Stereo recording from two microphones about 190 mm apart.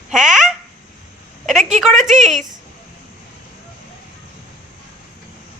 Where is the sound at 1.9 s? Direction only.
40° right (ahead or behind).